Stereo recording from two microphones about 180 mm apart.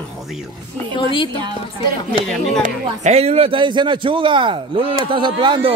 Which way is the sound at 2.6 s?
40° right (ahead or behind).